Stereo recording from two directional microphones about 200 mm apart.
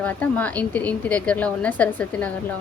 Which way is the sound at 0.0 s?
10° left (ahead or behind).